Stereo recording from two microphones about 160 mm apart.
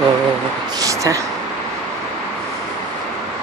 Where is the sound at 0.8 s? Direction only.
20° right (ahead or behind).